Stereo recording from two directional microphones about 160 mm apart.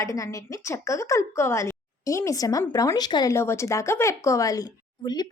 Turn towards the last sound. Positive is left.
turn(degrees=20)  # may be behind; listen again after turning